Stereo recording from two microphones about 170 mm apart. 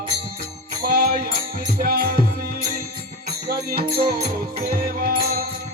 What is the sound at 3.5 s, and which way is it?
Music, 65° right (ahead or behind).